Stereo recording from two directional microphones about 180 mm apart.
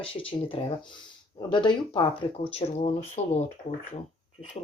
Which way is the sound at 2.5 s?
35° left (ahead or behind).